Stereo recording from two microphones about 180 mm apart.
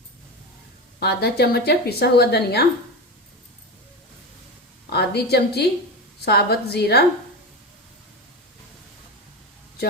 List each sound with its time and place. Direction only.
0.9 s a woman's voice: 60° left (ahead or behind)
4.9 s a woman's voice: 65° left (ahead or behind)